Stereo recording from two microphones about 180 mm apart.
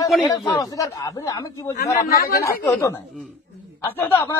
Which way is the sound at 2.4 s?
15° left (ahead or behind).